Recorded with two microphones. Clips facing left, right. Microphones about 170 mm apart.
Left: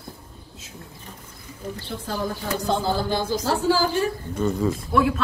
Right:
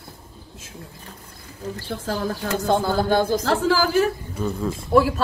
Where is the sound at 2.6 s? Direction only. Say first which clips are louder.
Right 4 dB; 55° right (ahead or behind).